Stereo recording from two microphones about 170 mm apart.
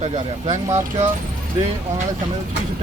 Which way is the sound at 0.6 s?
15° right (ahead or behind).